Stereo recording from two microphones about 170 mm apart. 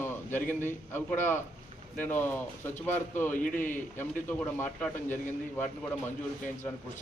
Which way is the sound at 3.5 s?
50° left (ahead or behind).